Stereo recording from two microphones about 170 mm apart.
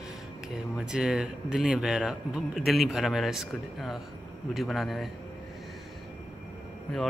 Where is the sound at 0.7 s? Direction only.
5° right (ahead or behind).